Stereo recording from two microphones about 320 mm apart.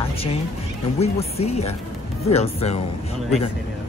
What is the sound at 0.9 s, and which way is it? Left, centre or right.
Speech, centre.